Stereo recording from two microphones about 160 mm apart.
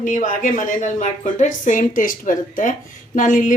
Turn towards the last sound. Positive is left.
turn(degrees=55)  # may be behind; listen again after turning